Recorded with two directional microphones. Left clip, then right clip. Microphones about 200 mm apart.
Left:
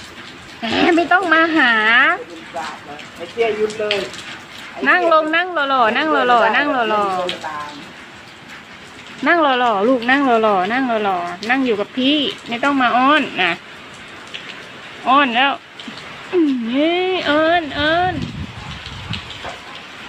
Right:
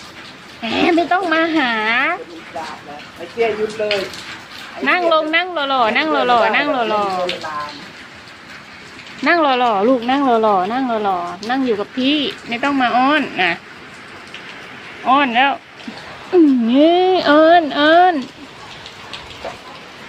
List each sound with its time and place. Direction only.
0.6 s speech: centre (ahead or behind)
3.3 s speech: 15° right (ahead or behind)
4.8 s speech: centre (ahead or behind)
9.2 s speech: centre (ahead or behind)
15.0 s speech: 5° right (ahead or behind)
16.7 s speech: 30° right (ahead or behind)